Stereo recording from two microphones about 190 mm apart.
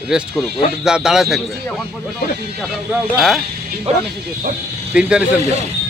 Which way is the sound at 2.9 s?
Centre (ahead or behind).